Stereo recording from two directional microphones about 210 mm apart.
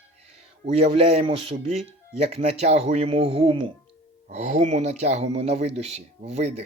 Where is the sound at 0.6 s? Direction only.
30° right (ahead or behind).